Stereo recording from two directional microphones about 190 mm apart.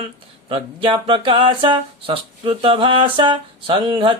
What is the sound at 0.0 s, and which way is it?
Speech, 30° right (ahead or behind).